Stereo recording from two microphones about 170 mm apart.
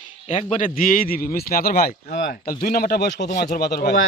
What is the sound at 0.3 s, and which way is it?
Speech, 40° left (ahead or behind).